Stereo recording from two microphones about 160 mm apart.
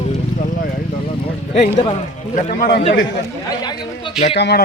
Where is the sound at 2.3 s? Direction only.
50° left (ahead or behind).